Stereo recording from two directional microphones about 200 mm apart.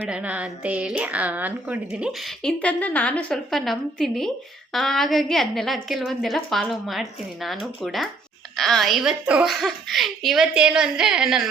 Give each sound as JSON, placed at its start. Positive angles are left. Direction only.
{"t": 0.0, "sound": "a woman's voice", "side_deg": -5}